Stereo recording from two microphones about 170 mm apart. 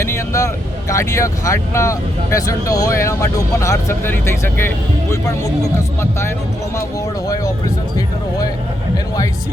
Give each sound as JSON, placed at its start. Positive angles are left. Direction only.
{"t": 0.0, "sound": "speech", "side_deg": 15}